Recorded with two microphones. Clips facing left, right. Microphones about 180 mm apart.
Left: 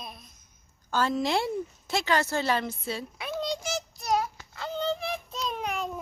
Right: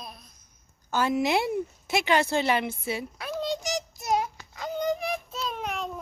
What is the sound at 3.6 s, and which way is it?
Child singing, 20° right (ahead or behind).